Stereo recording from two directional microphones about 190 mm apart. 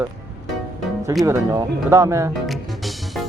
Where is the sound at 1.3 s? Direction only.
15° right (ahead or behind).